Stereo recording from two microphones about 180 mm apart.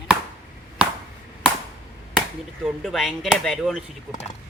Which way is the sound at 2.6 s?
Centre (ahead or behind).